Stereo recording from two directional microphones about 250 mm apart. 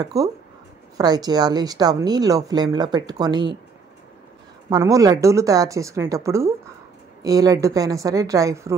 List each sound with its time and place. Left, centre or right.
0.0 s speech: centre
4.6 s speech: centre